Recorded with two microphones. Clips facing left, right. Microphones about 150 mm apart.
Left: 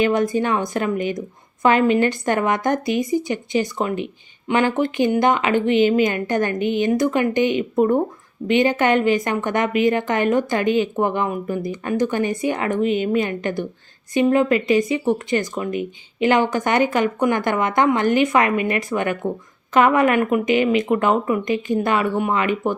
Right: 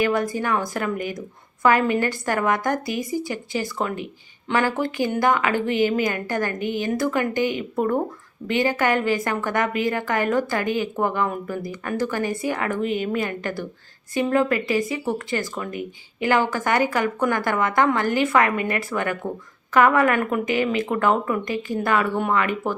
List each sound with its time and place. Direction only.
0.0 s a woman's voice: 20° left (ahead or behind)